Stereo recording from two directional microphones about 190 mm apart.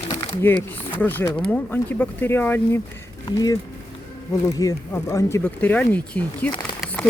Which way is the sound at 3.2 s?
20° left (ahead or behind).